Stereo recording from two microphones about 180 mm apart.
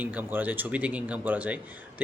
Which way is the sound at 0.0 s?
10° right (ahead or behind).